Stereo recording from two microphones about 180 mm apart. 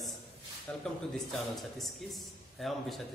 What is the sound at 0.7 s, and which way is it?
A man's voice, 10° left (ahead or behind).